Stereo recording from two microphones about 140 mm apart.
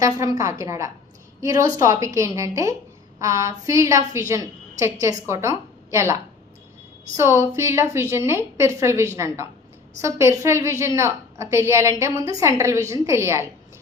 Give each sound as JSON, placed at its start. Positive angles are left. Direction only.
{"t": 0.0, "sound": "a woman's voice", "side_deg": -25}